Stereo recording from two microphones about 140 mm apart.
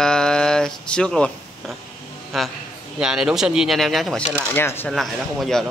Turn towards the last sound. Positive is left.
turn(degrees=0)  # may be behind; listen again after turning